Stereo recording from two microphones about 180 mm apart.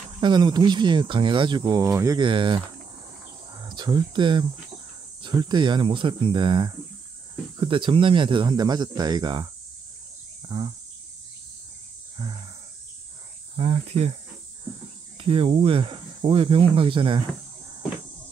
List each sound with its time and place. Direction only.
0.2 s speech: 25° right (ahead or behind)
13.6 s speech: 35° right (ahead or behind)
15.1 s speech: 30° right (ahead or behind)